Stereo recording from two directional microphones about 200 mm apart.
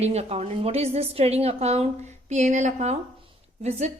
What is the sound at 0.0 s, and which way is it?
A woman's voice, 30° right (ahead or behind).